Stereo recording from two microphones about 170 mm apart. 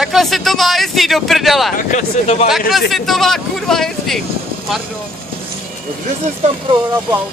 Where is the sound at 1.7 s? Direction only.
45° left (ahead or behind).